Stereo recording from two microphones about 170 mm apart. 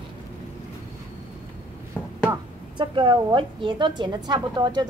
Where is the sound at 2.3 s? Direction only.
30° right (ahead or behind).